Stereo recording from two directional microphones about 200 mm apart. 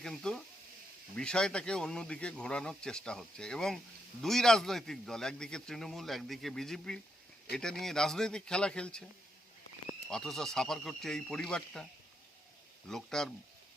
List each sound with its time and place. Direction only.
0.0 s speech: centre (ahead or behind)
10.1 s speech: centre (ahead or behind)
12.9 s speech: centre (ahead or behind)